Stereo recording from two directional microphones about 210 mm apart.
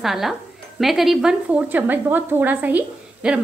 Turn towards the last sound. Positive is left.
turn(degrees=-5)  # may be behind; listen again after turning